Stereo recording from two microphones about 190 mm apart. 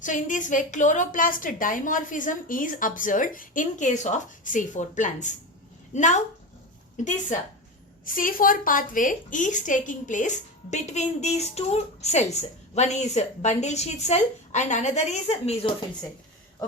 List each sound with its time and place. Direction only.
0.0 s a woman's voice: 40° left (ahead or behind)